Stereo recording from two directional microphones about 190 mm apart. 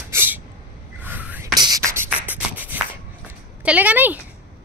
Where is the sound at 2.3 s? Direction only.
10° right (ahead or behind).